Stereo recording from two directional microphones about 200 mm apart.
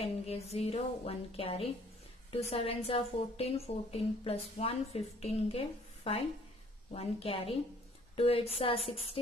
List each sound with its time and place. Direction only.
0.0 s a woman's voice: 30° left (ahead or behind)